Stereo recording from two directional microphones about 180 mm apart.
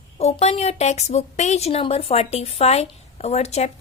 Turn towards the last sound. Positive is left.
turn(degrees=35)  # may be behind; listen again after turning